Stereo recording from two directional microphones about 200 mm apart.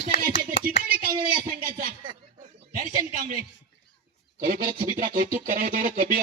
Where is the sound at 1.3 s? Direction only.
45° right (ahead or behind).